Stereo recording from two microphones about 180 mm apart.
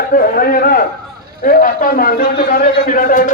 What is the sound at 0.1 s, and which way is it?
A man's voice, 55° left (ahead or behind).